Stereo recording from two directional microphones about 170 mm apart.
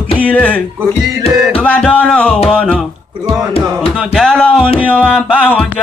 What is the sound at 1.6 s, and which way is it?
Music, 5° left (ahead or behind).